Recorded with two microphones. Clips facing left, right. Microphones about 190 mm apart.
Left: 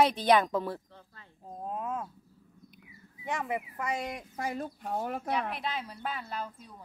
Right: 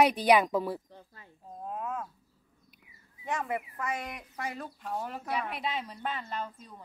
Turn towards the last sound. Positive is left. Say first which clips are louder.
# right 1 dB
turn(degrees=5)  # may be behind; listen again after turning